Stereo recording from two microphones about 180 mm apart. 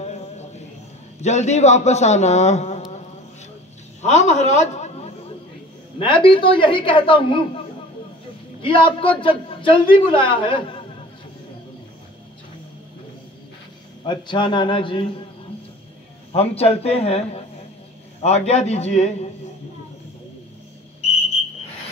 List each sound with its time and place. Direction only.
0.0 s a sound: 40° left (ahead or behind)
1.2 s a man's voice: 40° left (ahead or behind)
4.0 s a man's voice: 40° left (ahead or behind)
5.9 s a woman's voice: 25° left (ahead or behind)
8.6 s a woman's voice: 30° left (ahead or behind)
14.0 s a woman's voice: 25° left (ahead or behind)
16.3 s a man's voice: 35° left (ahead or behind)
18.2 s a man's voice: 35° left (ahead or behind)